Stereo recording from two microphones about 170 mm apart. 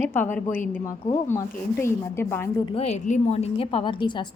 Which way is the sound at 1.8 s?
15° left (ahead or behind).